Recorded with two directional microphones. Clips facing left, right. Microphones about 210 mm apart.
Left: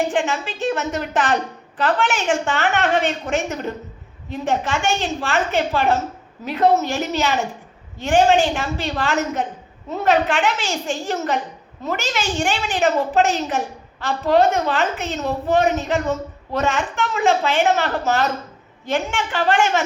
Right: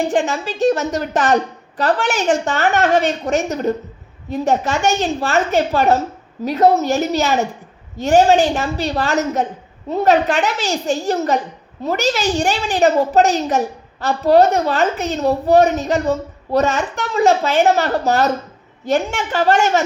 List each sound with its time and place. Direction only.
0.1 s a woman's voice: 40° right (ahead or behind)